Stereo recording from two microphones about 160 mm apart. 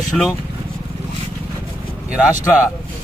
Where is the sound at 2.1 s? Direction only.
5° right (ahead or behind).